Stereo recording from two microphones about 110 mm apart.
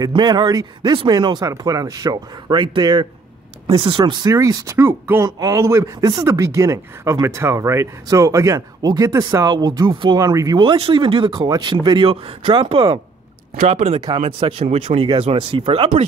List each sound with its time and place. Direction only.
0.0 s speech: 40° right (ahead or behind)
3.6 s speech: 50° right (ahead or behind)
4.0 s speech: 40° right (ahead or behind)
10.6 s speech: 50° right (ahead or behind)
11.3 s speech: 40° right (ahead or behind)
12.1 s speech: 60° right (ahead or behind)
13.7 s speech: 70° right (ahead or behind)